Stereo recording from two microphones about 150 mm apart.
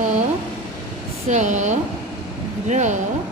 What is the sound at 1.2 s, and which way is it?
A woman's voice, 50° right (ahead or behind).